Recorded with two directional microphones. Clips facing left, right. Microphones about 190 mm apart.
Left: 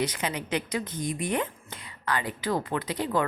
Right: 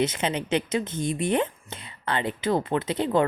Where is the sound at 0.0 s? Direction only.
25° right (ahead or behind).